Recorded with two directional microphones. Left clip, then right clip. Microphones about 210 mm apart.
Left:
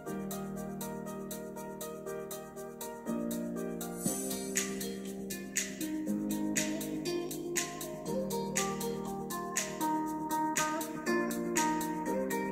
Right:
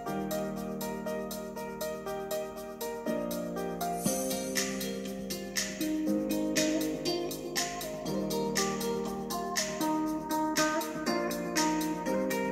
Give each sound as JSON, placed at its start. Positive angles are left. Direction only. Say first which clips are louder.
{"t": 9.6, "sound": "music", "louder": "right 1 dB", "side_deg": 40}